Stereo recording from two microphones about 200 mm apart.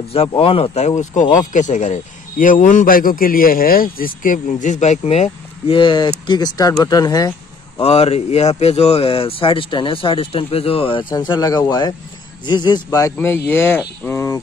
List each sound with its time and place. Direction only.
0.1 s a man's voice: 30° left (ahead or behind)
7.8 s speech: 30° left (ahead or behind); by 14.4 s 10° left (ahead or behind)